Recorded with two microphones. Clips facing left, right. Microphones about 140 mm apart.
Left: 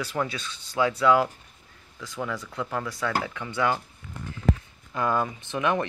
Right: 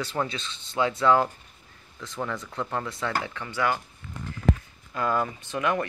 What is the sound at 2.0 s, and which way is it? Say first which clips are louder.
Speech: even; 5° left (ahead or behind).